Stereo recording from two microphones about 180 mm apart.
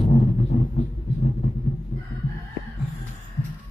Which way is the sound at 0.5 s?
35° left (ahead or behind).